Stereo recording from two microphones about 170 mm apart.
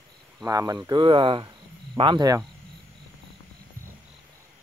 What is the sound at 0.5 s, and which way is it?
Speech, 20° right (ahead or behind).